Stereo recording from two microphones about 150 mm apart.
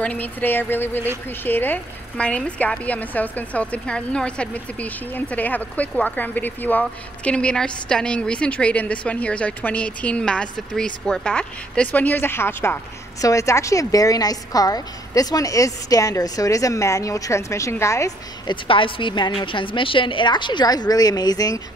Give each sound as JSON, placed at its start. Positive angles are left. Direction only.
{"t": 0.0, "sound": "a woman's voice", "side_deg": 10}
{"t": 18.5, "sound": "a woman's voice", "side_deg": 35}